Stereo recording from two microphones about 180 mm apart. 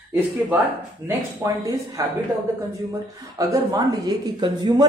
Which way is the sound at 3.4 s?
20° right (ahead or behind).